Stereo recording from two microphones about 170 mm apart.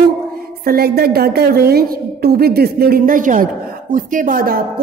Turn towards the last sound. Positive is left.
turn(degrees=-55)  # may be behind; listen again after turning